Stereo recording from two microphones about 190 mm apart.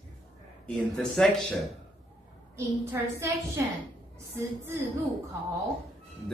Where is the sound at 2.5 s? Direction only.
15° right (ahead or behind).